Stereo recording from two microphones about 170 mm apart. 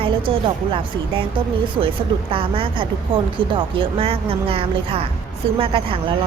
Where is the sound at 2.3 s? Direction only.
30° right (ahead or behind).